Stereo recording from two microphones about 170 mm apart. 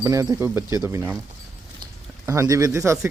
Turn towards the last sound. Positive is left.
turn(degrees=-15)  # may be behind; listen again after turning